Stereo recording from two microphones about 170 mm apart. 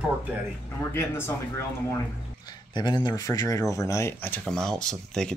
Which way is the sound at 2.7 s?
25° left (ahead or behind).